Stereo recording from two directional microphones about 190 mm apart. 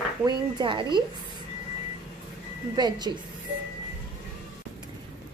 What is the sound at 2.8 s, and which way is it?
Speech, 20° right (ahead or behind).